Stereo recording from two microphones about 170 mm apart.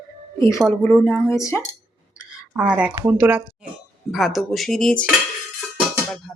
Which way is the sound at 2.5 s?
5° right (ahead or behind).